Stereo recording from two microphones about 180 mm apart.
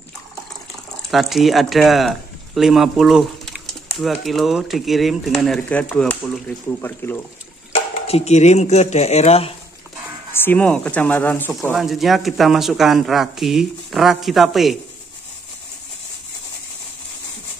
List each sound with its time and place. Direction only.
1.1 s speech: centre (ahead or behind)
8.1 s speech: 35° left (ahead or behind)
10.3 s speech: 10° left (ahead or behind)
11.7 s speech: centre (ahead or behind)